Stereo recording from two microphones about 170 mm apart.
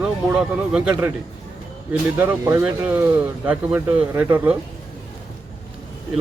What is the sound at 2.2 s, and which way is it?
Speech, 15° right (ahead or behind).